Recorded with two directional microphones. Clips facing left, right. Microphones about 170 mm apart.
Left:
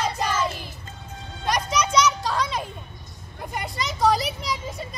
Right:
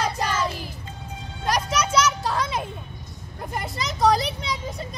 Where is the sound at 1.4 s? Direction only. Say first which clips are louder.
Even; 10° right (ahead or behind).